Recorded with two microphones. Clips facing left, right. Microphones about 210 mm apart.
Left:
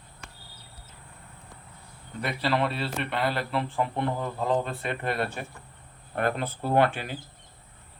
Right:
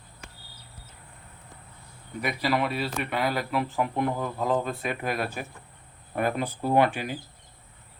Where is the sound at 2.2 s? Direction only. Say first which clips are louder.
Even; 10° right (ahead or behind).